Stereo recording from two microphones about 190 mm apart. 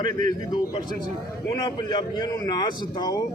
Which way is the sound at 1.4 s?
20° left (ahead or behind).